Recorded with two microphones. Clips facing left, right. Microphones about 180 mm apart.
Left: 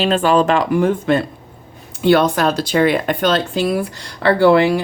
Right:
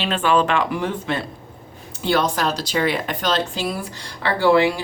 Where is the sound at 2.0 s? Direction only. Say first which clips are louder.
Left 7 dB; 60° left (ahead or behind).